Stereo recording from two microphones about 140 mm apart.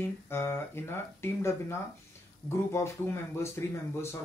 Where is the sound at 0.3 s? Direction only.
15° left (ahead or behind).